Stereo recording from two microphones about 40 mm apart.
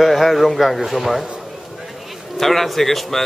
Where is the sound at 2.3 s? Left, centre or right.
Centre.